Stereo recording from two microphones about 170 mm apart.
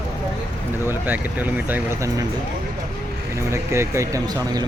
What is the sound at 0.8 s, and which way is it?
Speech, 10° right (ahead or behind).